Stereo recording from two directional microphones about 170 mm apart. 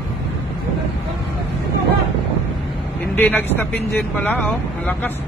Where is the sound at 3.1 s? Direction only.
10° left (ahead or behind).